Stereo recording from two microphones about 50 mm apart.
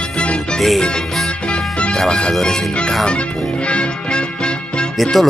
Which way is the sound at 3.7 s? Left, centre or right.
Left.